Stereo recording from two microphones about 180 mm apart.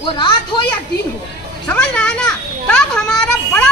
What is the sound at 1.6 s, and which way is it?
A child's voice, 5° left (ahead or behind).